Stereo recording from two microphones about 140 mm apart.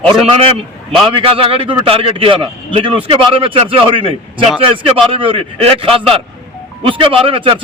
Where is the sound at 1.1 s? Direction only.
40° right (ahead or behind).